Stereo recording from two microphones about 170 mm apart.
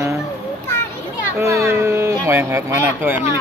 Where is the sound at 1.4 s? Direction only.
15° right (ahead or behind).